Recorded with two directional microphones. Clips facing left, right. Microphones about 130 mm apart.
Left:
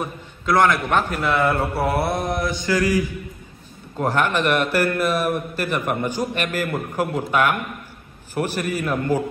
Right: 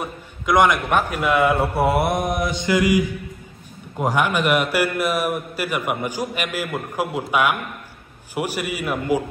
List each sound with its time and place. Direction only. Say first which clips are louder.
0.0 s a man's voice: left 1 dB; 15° right (ahead or behind)